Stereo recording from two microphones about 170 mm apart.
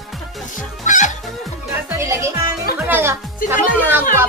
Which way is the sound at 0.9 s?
45° left (ahead or behind).